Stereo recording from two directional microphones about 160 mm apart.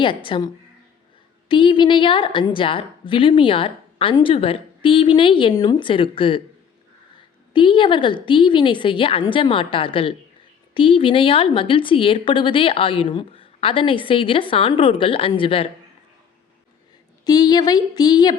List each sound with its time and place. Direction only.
0.0 s a woman's voice: 30° left (ahead or behind)
7.5 s a woman's voice: 30° left (ahead or behind)
17.2 s speech: 25° left (ahead or behind)